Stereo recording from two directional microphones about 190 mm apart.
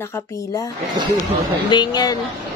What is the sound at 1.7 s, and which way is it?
Speech, 20° left (ahead or behind).